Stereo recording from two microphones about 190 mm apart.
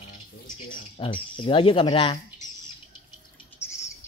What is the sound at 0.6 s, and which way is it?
Speech, 25° left (ahead or behind).